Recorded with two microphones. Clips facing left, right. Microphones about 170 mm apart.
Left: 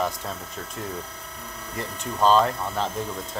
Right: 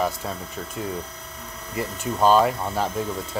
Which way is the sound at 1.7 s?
10° right (ahead or behind).